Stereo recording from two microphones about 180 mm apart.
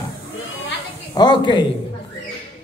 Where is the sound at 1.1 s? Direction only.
25° left (ahead or behind).